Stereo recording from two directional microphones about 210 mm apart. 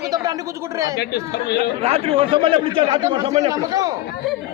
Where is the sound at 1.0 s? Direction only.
50° left (ahead or behind).